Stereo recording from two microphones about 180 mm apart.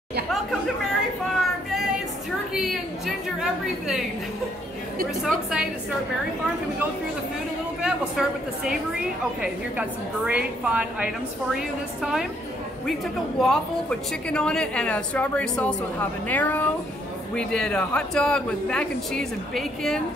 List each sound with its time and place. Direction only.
1.2 s a sound: centre (ahead or behind)
5.2 s a man's voice: 5° right (ahead or behind)
7.8 s a man's voice: 5° right (ahead or behind)
13.4 s a woman's voice: 5° left (ahead or behind)